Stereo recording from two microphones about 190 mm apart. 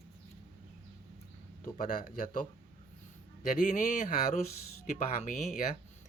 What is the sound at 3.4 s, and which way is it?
Speech, 45° left (ahead or behind).